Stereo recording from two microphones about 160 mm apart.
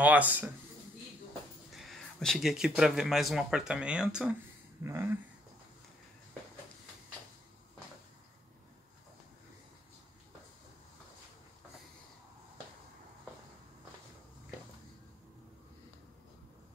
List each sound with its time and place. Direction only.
0.0 s speech: 10° right (ahead or behind)
1.7 s speech: centre (ahead or behind)
4.8 s speech: 15° right (ahead or behind)